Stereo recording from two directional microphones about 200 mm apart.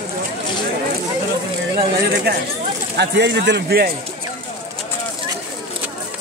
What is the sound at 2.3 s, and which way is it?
A man's voice, 55° right (ahead or behind).